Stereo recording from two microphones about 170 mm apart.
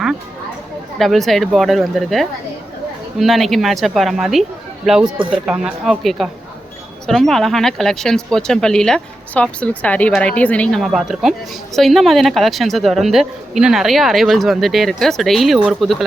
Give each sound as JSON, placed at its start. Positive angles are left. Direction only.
{"t": 0.9, "sound": "a woman's voice", "side_deg": 0}